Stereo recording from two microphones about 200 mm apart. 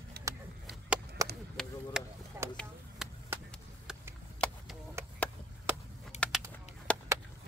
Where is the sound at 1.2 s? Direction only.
15° right (ahead or behind).